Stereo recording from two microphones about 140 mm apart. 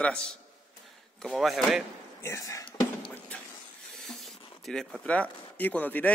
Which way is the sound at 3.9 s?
Centre (ahead or behind).